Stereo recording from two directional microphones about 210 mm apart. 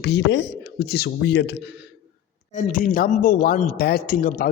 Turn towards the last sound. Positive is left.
turn(degrees=40)  # may be behind; listen again after turning